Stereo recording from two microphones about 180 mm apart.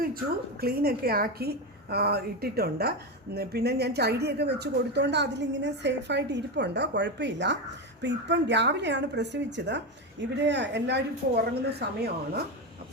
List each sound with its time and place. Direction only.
0.6 s a woman's voice: 60° right (ahead or behind)